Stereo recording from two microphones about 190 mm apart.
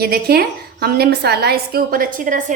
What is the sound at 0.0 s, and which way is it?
A woman's voice, 55° right (ahead or behind).